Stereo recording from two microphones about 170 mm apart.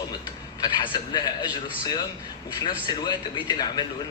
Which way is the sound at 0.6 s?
25° left (ahead or behind).